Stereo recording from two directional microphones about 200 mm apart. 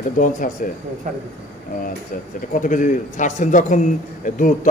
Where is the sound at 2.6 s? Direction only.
40° left (ahead or behind).